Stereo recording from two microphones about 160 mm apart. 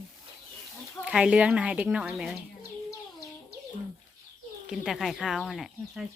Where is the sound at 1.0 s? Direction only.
5° right (ahead or behind).